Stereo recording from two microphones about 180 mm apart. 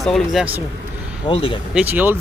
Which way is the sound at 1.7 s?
10° right (ahead or behind).